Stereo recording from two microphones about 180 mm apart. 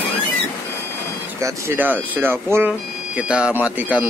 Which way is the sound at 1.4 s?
15° right (ahead or behind).